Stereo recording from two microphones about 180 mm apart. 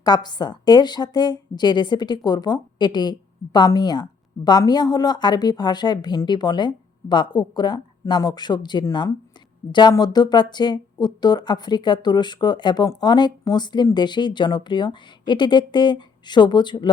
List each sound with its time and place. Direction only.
0.0 s speech: 25° left (ahead or behind)